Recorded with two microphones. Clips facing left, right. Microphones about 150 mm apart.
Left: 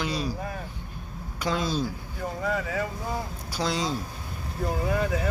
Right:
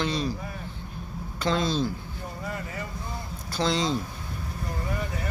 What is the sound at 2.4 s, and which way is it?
Speech, 90° left.